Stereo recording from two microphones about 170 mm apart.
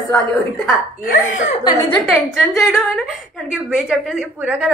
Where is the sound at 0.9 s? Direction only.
55° left (ahead or behind).